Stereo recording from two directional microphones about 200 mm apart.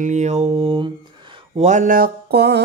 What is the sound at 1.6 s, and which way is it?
Mantra, 40° right (ahead or behind).